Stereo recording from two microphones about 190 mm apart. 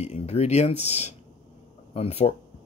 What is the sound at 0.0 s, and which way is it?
Speech, 35° left (ahead or behind).